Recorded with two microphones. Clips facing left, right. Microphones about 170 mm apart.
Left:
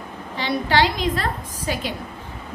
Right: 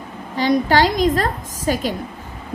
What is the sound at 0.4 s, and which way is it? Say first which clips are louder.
A woman's voice: right 5 dB; 45° right (ahead or behind).